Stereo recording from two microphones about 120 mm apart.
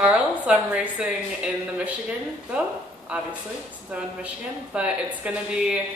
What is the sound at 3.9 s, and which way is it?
A woman's voice, 15° right (ahead or behind).